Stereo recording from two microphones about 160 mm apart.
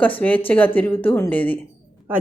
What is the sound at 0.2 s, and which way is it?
Speech, 10° left (ahead or behind).